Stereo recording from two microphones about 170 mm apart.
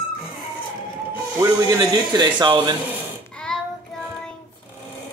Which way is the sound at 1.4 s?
20° right (ahead or behind).